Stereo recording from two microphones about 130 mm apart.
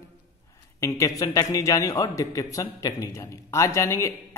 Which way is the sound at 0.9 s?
25° left (ahead or behind).